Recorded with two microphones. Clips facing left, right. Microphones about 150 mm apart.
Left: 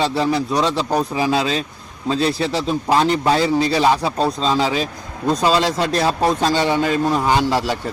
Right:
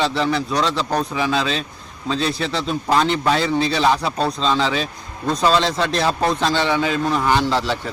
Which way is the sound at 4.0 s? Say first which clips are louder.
Left 2 dB; 10° left (ahead or behind).